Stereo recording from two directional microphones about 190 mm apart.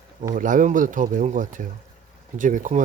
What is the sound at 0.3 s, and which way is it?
Speech, 45° right (ahead or behind).